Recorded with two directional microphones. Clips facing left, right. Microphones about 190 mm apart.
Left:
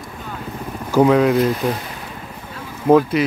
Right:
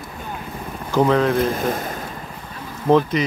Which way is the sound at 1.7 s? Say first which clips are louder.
Even; 45° right (ahead or behind).